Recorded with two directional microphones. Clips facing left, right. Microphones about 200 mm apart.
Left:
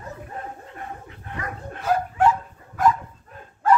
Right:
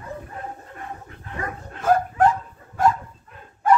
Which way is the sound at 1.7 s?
50° right (ahead or behind).